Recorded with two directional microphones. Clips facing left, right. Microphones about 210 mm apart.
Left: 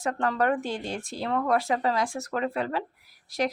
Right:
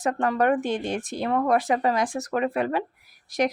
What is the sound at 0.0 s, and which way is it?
Speech, 15° right (ahead or behind).